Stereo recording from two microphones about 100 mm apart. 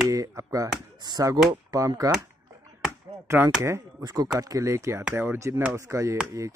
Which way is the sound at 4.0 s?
40° right (ahead or behind).